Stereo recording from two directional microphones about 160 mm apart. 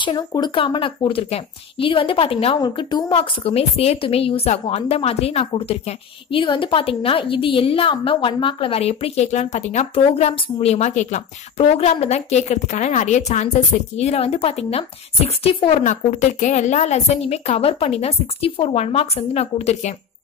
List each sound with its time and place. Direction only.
0.0 s speech: 30° left (ahead or behind)